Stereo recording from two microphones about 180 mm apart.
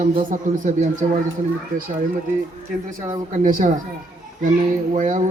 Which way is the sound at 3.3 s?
45° right (ahead or behind).